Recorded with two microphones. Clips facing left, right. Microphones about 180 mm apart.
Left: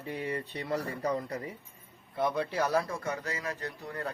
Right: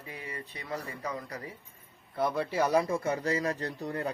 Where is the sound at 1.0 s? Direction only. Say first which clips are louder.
Left 5 dB; 35° left (ahead or behind).